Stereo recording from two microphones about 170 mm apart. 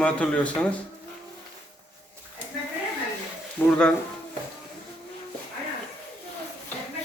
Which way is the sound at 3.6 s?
10° left (ahead or behind).